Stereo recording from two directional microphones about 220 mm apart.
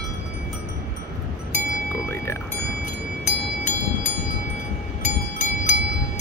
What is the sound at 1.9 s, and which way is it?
Speech, 10° left (ahead or behind).